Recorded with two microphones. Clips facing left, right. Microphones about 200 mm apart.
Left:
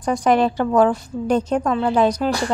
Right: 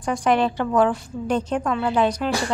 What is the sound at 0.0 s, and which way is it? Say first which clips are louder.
A woman's voice: left 3 dB; 40° left (ahead or behind).